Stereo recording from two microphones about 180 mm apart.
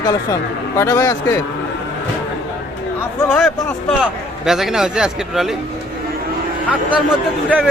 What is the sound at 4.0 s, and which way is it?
Speech, centre (ahead or behind).